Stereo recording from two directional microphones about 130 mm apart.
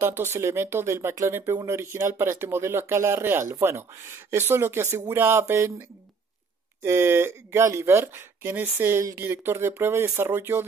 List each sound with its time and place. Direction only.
0.0 s speech: 20° right (ahead or behind)